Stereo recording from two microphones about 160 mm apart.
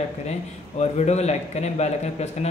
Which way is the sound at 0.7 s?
45° left (ahead or behind).